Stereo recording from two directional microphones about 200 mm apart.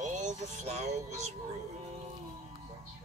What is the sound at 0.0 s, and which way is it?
Music, 35° right (ahead or behind).